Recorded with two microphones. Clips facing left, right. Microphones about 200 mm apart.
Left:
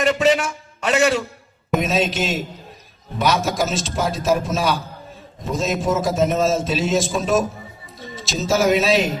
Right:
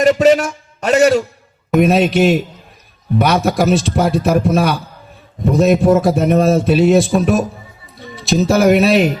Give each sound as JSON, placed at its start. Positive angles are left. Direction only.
{"t": 0.0, "sound": "a man's voice", "side_deg": -40}
{"t": 1.8, "sound": "a man's voice", "side_deg": -60}